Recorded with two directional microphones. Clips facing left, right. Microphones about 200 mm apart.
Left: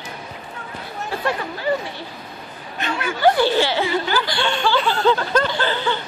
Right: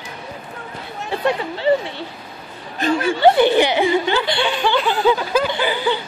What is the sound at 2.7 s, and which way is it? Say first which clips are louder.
Speech: right 7 dB; 35° right (ahead or behind).